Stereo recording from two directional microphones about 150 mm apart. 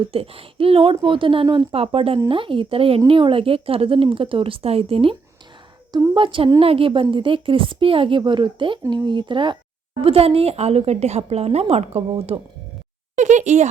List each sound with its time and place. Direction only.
0.0 s a woman's voice: 40° right (ahead or behind)